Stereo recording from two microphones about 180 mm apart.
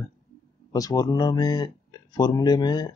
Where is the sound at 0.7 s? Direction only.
20° left (ahead or behind).